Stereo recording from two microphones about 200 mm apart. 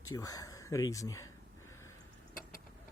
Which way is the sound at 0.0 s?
20° left (ahead or behind).